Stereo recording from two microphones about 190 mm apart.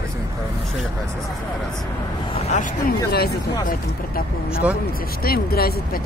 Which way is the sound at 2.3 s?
35° left (ahead or behind).